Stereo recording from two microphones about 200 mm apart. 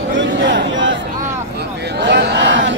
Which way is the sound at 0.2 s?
65° right (ahead or behind).